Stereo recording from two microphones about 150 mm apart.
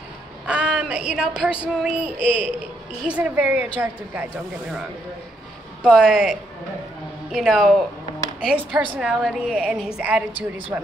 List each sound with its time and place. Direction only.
0.5 s a sound: 5° right (ahead or behind)
3.1 s a woman's voice: 10° right (ahead or behind)
5.9 s a woman's voice: 5° right (ahead or behind)